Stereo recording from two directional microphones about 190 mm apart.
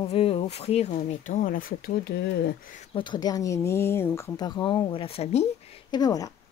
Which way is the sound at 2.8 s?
25° left (ahead or behind).